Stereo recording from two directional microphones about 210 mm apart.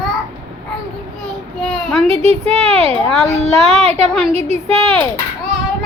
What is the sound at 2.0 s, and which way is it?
A woman's voice, 30° right (ahead or behind).